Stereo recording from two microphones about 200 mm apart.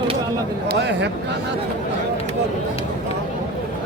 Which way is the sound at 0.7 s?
60° right (ahead or behind).